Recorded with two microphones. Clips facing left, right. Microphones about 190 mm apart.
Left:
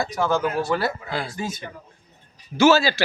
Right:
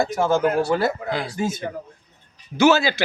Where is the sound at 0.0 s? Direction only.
25° right (ahead or behind).